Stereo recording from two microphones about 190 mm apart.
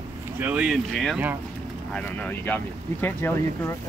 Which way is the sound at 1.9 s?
5° left (ahead or behind).